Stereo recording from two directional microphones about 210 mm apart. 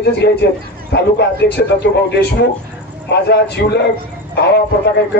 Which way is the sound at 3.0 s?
55° left (ahead or behind).